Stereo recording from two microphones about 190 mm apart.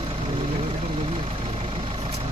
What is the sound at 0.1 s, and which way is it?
Vehicle, 25° right (ahead or behind).